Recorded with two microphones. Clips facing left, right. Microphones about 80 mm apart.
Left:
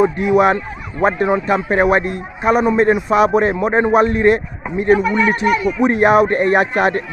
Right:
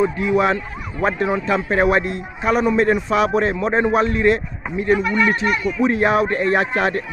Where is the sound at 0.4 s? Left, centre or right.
Left.